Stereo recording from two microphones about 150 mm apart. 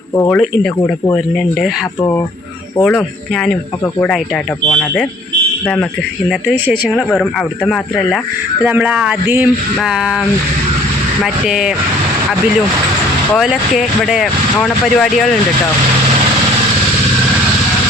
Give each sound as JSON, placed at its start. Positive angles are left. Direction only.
{"t": 0.3, "sound": "speech", "side_deg": 5}
{"t": 2.0, "sound": "speech", "side_deg": 20}
{"t": 4.6, "sound": "speech", "side_deg": 10}
{"t": 6.9, "sound": "speech", "side_deg": 0}
{"t": 8.6, "sound": "speech", "side_deg": -10}
{"t": 11.4, "sound": "speech", "side_deg": -5}
{"t": 13.3, "sound": "speech", "side_deg": 0}